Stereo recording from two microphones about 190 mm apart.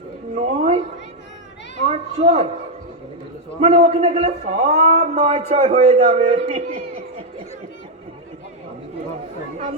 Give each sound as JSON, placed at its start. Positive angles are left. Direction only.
{"t": 0.3, "sound": "a sound", "side_deg": -35}
{"t": 1.8, "sound": "children playing", "side_deg": -35}
{"t": 3.6, "sound": "a man's voice", "side_deg": -30}